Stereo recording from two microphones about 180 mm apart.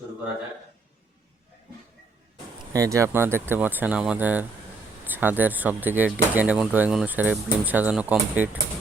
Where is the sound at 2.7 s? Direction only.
15° right (ahead or behind).